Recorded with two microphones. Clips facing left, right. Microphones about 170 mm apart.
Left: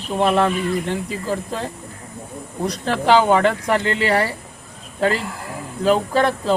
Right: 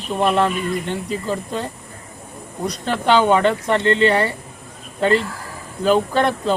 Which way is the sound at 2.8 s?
5° left (ahead or behind).